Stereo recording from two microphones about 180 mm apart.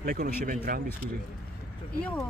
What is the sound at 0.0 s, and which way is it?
Speech, 50° right (ahead or behind).